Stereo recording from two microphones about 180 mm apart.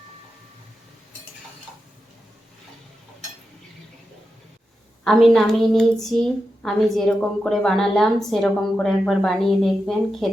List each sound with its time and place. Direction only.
5.0 s a woman's voice: centre (ahead or behind)